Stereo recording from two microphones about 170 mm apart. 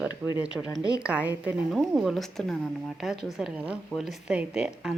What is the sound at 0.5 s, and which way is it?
Speech, 5° left (ahead or behind).